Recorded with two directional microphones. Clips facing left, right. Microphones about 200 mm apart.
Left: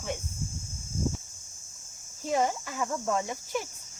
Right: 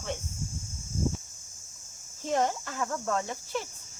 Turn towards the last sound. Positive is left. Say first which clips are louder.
# left 1 dB
turn(degrees=15)  # may be behind; listen again after turning